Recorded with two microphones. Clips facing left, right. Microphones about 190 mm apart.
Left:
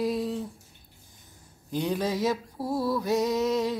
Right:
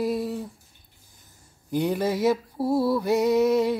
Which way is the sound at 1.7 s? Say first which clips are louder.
Right 4 dB; 10° right (ahead or behind).